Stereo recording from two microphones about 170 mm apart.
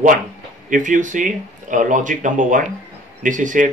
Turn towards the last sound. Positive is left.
turn(degrees=-50)  # may be behind; listen again after turning